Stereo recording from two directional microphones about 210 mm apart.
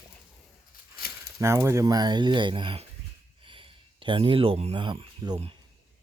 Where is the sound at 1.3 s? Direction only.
15° right (ahead or behind).